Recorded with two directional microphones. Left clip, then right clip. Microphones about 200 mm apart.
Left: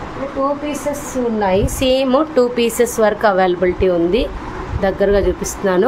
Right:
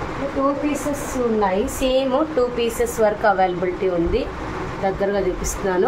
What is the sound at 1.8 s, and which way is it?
A woman's voice, 50° left (ahead or behind).